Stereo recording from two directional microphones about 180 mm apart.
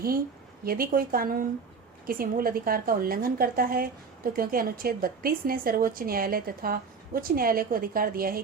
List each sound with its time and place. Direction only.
0.6 s a woman's voice: 55° right (ahead or behind)